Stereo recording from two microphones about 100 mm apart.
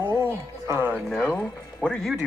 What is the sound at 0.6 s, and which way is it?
Speech, 25° right (ahead or behind).